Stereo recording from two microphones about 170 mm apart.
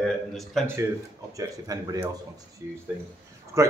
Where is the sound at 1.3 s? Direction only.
20° right (ahead or behind).